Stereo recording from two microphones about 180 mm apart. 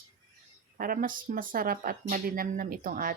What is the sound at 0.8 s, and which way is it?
Speech, 50° right (ahead or behind).